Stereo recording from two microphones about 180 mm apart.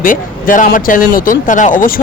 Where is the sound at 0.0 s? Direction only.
50° left (ahead or behind).